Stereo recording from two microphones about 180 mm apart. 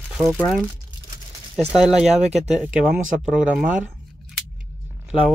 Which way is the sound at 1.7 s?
5° right (ahead or behind).